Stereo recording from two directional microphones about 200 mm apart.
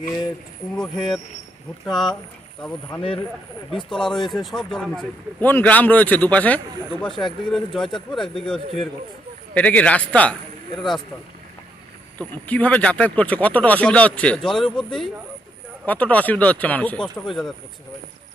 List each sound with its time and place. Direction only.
0.7 s speech: centre (ahead or behind)
3.0 s speech: 25° left (ahead or behind)
3.7 s speech: centre (ahead or behind)
12.2 s speech: 5° left (ahead or behind)